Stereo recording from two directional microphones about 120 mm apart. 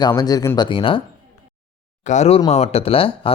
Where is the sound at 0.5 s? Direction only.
45° left (ahead or behind).